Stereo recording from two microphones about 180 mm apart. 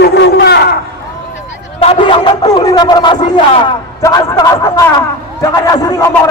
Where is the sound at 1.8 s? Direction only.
30° left (ahead or behind).